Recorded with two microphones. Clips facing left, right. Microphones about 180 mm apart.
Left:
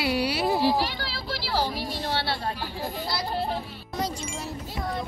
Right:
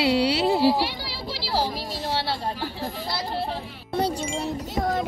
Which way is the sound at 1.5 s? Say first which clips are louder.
Right 2 dB; 35° right (ahead or behind).